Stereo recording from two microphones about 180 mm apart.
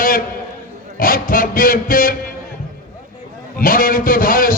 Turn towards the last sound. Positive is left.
turn(degrees=50)  # may be behind; listen again after turning